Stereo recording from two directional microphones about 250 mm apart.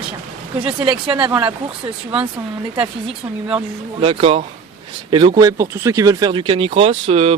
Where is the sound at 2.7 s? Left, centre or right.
Right.